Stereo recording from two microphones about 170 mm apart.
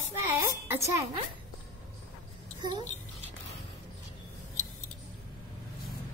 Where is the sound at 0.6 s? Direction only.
15° right (ahead or behind).